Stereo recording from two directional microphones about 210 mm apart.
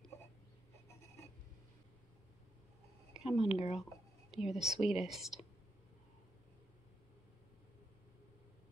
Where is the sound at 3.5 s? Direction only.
30° left (ahead or behind).